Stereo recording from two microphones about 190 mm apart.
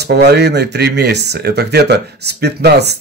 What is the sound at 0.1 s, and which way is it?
Speech, 60° right (ahead or behind).